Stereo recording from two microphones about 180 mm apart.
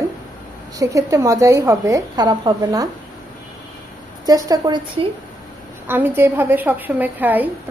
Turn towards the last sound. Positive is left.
turn(degrees=-10)  # may be behind; listen again after turning